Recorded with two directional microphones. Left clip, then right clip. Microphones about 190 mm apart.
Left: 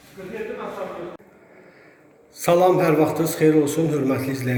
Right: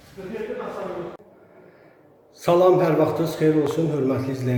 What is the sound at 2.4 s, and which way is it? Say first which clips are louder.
A man's voice: even; 5° left (ahead or behind).